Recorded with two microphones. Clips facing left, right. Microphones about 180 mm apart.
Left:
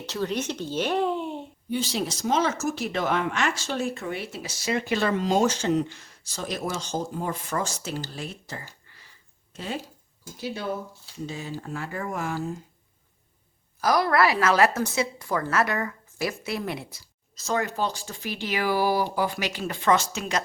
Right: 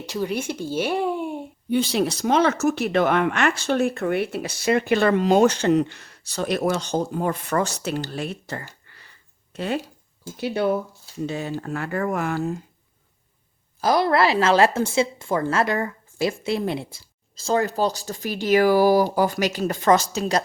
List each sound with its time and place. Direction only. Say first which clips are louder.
0.0 s speech: right 2 dB; 10° right (ahead or behind)
1.7 s speech: right 7 dB; 60° right (ahead or behind)
13.8 s a woman's voice: right 3 dB; 25° right (ahead or behind)